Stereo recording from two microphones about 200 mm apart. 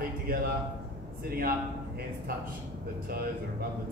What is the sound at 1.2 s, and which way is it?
Speech, 50° right (ahead or behind).